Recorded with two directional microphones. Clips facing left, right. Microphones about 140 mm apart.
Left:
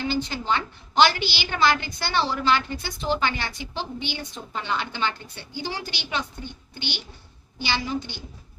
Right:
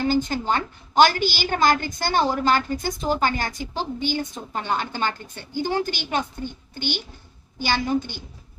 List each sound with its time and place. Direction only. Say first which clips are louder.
0.0 s a woman's voice: right 5 dB; 45° right (ahead or behind)